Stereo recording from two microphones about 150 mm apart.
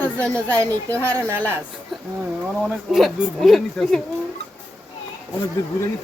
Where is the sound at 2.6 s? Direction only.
Centre (ahead or behind).